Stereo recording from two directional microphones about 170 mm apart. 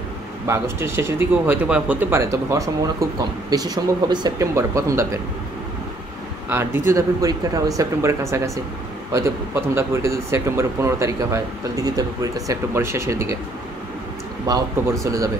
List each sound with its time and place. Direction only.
0.5 s speech: 15° right (ahead or behind)
6.5 s speech: 15° right (ahead or behind)
14.4 s speech: 20° right (ahead or behind)